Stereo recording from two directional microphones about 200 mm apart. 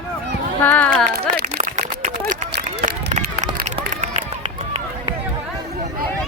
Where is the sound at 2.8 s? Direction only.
35° right (ahead or behind).